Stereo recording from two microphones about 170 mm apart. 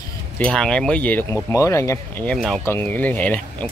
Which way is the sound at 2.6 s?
15° left (ahead or behind).